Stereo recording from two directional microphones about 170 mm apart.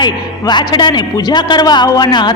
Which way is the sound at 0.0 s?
25° left (ahead or behind).